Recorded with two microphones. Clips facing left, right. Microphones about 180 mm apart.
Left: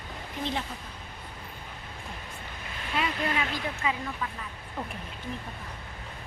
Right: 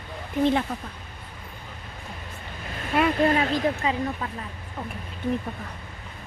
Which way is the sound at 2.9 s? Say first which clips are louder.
Right 9 dB; 50° right (ahead or behind).